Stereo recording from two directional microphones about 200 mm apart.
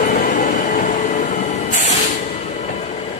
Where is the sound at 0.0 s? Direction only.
40° left (ahead or behind).